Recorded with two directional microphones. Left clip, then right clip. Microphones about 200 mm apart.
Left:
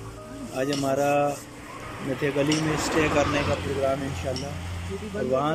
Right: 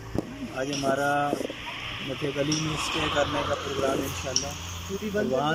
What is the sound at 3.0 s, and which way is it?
Speech, 55° left (ahead or behind).